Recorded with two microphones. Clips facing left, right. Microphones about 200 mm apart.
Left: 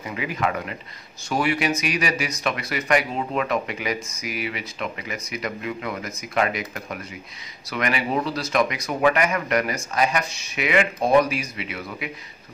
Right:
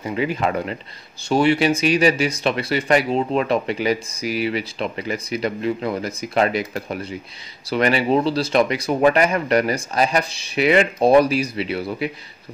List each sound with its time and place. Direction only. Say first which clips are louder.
0.0 s speech: right 5 dB; 30° right (ahead or behind)